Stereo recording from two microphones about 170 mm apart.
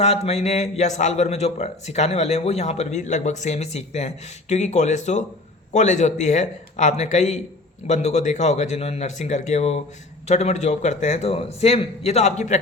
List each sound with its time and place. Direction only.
0.0 s a man's voice: 40° left (ahead or behind)